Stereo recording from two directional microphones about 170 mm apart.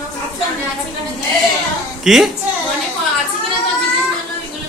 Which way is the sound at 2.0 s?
Centre (ahead or behind).